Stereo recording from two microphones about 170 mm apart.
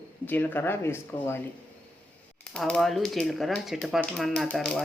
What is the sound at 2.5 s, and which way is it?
Speech, 5° left (ahead or behind).